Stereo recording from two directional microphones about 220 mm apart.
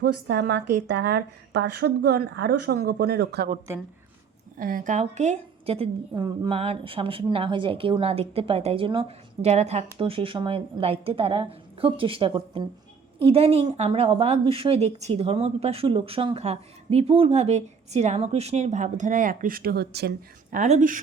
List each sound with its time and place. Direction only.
0.0 s speech: 50° right (ahead or behind)
4.5 s a woman's voice: 40° right (ahead or behind)